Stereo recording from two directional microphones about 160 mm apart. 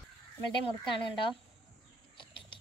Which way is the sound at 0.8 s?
30° left (ahead or behind).